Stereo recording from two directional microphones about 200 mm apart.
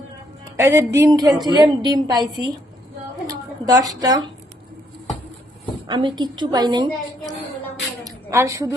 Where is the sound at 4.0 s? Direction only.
20° right (ahead or behind).